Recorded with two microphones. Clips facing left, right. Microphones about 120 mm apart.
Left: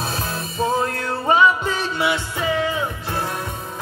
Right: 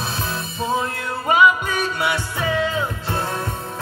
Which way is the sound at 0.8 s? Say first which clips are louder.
Left 3 dB; 35° left (ahead or behind).